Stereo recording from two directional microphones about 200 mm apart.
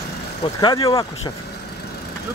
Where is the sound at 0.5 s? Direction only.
20° left (ahead or behind).